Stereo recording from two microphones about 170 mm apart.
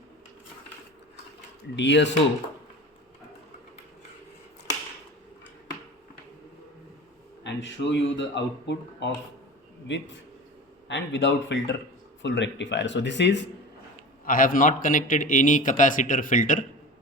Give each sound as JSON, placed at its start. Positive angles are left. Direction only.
{"t": 1.7, "sound": "speech", "side_deg": 90}
{"t": 7.4, "sound": "speech", "side_deg": 90}
{"t": 14.3, "sound": "a man's voice", "side_deg": 55}